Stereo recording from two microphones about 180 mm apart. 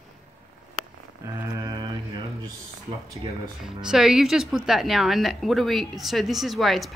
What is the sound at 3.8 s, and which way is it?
Speech, 5° right (ahead or behind).